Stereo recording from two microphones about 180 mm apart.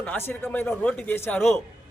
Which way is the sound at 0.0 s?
10° left (ahead or behind).